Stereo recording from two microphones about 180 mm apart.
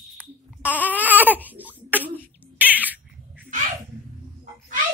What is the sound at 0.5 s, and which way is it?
Baby cry, 10° right (ahead or behind).